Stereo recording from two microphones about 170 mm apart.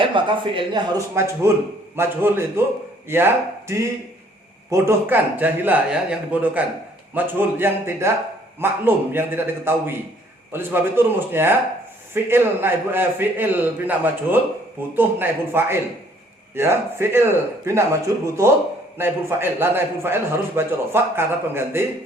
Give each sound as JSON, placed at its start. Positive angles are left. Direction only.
{"t": 0.0, "sound": "speech", "side_deg": -30}
{"t": 1.1, "sound": "a man's voice", "side_deg": -15}